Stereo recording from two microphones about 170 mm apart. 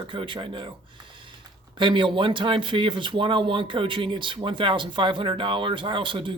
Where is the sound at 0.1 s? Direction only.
30° right (ahead or behind).